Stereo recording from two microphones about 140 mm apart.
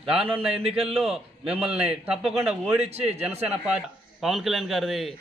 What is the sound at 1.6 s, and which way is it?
Speech, 45° right (ahead or behind).